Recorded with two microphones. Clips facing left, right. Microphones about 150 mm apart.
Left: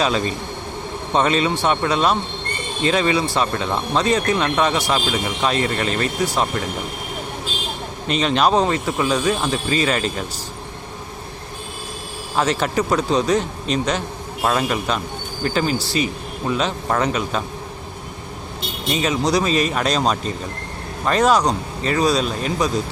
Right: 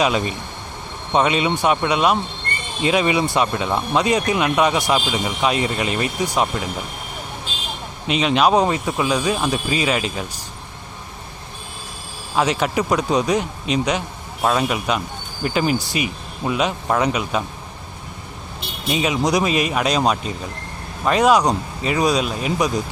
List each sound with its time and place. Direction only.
0.0 s a man's voice: 10° right (ahead or behind)
8.0 s a man's voice: 5° right (ahead or behind)
9.5 s speech: 10° right (ahead or behind)
12.4 s a man's voice: 5° right (ahead or behind); by 16.0 s 20° right (ahead or behind)
16.5 s speech: 10° right (ahead or behind)
18.9 s speech: 15° right (ahead or behind)
21.9 s speech: 15° right (ahead or behind)